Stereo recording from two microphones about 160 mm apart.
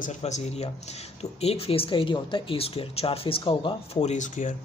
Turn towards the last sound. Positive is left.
turn(degrees=50)  # may be behind; listen again after turning